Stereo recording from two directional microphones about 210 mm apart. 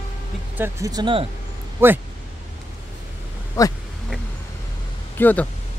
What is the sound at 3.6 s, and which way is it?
Speech, 15° left (ahead or behind).